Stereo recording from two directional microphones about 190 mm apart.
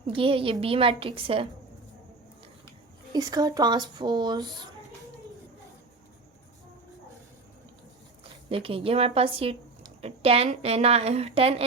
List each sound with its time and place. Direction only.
0.0 s speech: 30° right (ahead or behind)
3.1 s speech: 20° right (ahead or behind)
8.2 s a woman's voice: 30° right (ahead or behind)